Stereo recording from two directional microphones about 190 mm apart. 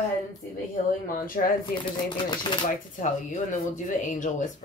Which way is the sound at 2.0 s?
25° left (ahead or behind).